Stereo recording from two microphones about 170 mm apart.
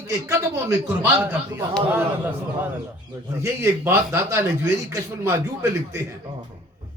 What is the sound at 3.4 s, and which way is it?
Speech, 15° right (ahead or behind).